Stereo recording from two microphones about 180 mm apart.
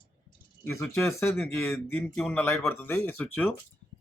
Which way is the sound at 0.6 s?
10° left (ahead or behind).